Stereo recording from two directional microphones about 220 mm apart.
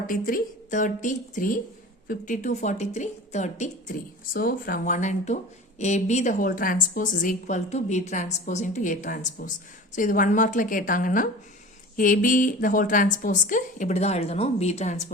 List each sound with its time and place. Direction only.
0.1 s a woman's voice: 40° left (ahead or behind)